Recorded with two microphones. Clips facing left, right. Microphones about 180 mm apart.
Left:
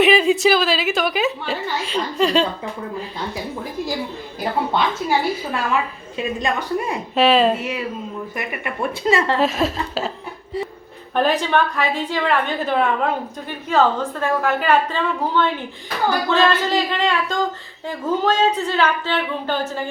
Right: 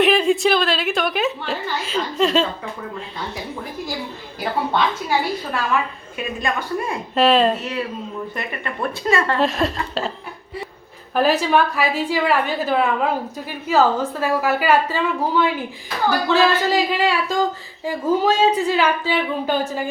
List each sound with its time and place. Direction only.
0.0 s a woman's voice: centre (ahead or behind)
4.7 s a woman's voice: 5° left (ahead or behind)
6.4 s speech: 20° left (ahead or behind)
7.2 s a woman's voice: centre (ahead or behind)
8.4 s speech: 15° left (ahead or behind)
9.4 s a woman's voice: centre (ahead or behind)
11.1 s a woman's voice: 5° right (ahead or behind)